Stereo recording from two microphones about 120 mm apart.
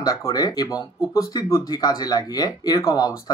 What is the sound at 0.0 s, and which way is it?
Speech, 30° left (ahead or behind).